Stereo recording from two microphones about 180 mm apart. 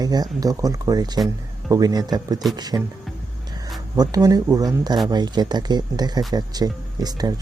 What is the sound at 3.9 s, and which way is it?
Speech, 20° right (ahead or behind).